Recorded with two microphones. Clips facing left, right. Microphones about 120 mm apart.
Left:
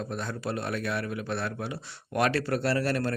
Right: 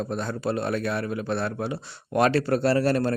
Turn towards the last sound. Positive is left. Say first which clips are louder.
# right 5 dB
turn(degrees=-30)  # may be behind; listen again after turning